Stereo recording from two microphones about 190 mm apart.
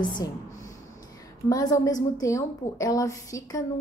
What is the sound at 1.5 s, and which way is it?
A woman's voice, 20° left (ahead or behind).